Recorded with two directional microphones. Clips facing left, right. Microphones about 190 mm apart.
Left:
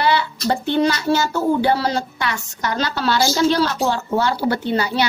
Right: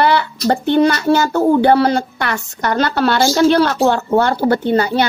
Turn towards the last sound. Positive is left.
turn(degrees=-50)  # may be behind; listen again after turning